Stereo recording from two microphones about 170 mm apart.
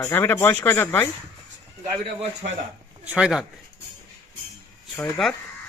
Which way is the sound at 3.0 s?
5° right (ahead or behind).